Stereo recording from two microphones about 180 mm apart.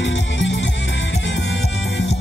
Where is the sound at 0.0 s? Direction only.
85° left.